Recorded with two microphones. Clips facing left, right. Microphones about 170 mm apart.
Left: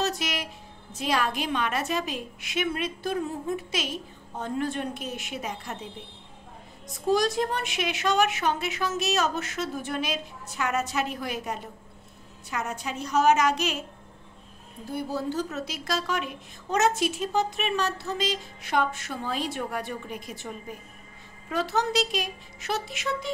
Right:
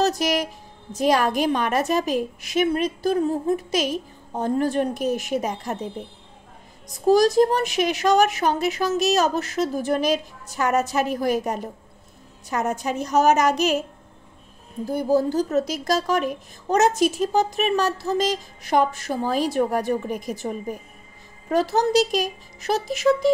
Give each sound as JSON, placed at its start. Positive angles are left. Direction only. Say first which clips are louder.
{"t": 0.0, "sound": "music", "louder": "right 8 dB", "side_deg": -40}
{"t": 0.9, "sound": "speech", "louder": "right 8 dB", "side_deg": -45}
{"t": 14.9, "sound": "speech", "louder": "right 9 dB", "side_deg": -40}